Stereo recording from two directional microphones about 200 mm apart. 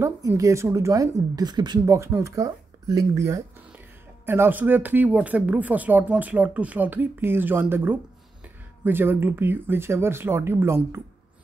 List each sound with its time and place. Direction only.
0.0 s speech: 15° right (ahead or behind)
3.3 s a sound: 15° right (ahead or behind)
4.3 s speech: 10° right (ahead or behind)